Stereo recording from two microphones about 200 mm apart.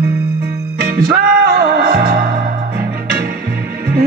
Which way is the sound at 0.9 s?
50° right (ahead or behind).